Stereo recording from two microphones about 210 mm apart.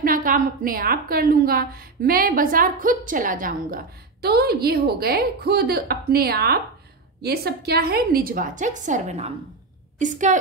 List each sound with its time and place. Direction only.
0.0 s a woman's voice: 40° right (ahead or behind)